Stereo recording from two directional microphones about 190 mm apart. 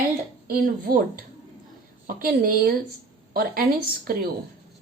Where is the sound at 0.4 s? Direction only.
50° right (ahead or behind).